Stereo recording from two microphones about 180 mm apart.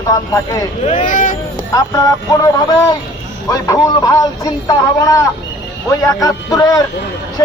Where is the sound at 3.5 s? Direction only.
20° left (ahead or behind).